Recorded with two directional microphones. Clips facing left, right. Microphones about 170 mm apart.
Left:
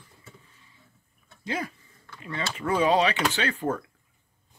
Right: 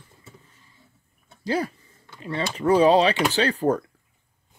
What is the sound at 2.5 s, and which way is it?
Speech, 35° right (ahead or behind).